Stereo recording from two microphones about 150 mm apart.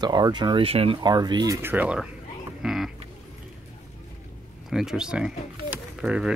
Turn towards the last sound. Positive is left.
turn(degrees=-5)  # may be behind; listen again after turning